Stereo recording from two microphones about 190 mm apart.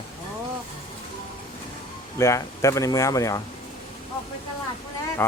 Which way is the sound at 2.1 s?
15° left (ahead or behind).